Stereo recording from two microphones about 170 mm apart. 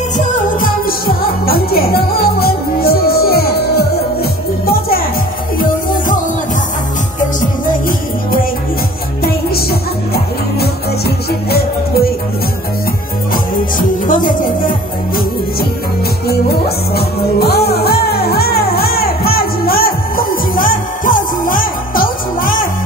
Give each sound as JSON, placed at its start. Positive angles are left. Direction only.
{"t": 0.2, "sound": "music", "side_deg": 55}
{"t": 9.2, "sound": "music", "side_deg": 65}
{"t": 13.3, "sound": "music", "side_deg": 55}
{"t": 16.3, "sound": "music", "side_deg": 65}